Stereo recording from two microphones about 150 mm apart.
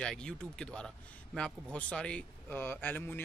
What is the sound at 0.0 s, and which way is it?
A man's voice, 5° left (ahead or behind).